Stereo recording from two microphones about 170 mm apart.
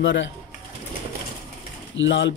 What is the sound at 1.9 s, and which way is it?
Speech, 90° left.